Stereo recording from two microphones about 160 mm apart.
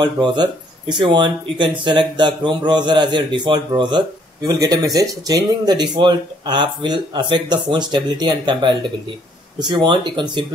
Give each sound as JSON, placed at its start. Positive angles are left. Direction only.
{"t": 0.0, "sound": "speech", "side_deg": -25}